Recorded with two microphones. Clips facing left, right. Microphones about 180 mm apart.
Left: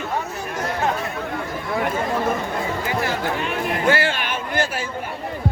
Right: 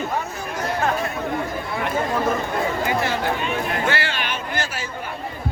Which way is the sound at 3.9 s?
50° left (ahead or behind).